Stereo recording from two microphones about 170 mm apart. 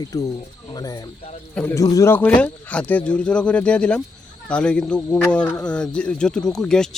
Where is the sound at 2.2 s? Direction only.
10° left (ahead or behind).